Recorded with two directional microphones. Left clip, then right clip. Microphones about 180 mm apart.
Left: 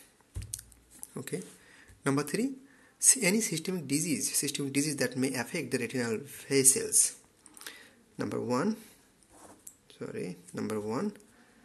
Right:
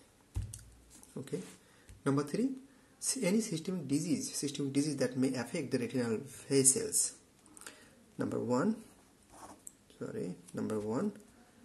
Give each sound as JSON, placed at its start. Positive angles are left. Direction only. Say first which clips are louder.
{"t": 1.1, "sound": "speech", "louder": "left 3 dB", "side_deg": 20}
{"t": 7.6, "sound": "a sound", "louder": "left 6 dB", "side_deg": 5}
{"t": 8.5, "sound": "speech", "louder": "left 2 dB", "side_deg": 5}
{"t": 9.8, "sound": "speech", "louder": "left 2 dB", "side_deg": 5}